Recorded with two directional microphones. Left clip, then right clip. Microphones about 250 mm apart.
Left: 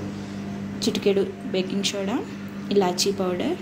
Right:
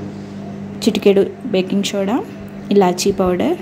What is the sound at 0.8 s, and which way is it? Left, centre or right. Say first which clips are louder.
Speech: right 9 dB; right.